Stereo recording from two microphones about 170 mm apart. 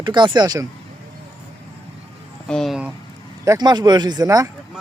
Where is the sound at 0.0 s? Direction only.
25° right (ahead or behind).